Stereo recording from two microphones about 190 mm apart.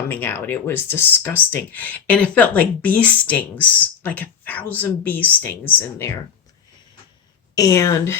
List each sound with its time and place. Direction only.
0.1 s speech: 10° left (ahead or behind)
7.5 s speech: 15° left (ahead or behind)